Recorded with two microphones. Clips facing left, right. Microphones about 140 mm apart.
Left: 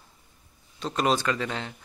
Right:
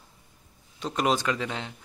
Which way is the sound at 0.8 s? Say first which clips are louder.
Left 1 dB; 15° right (ahead or behind).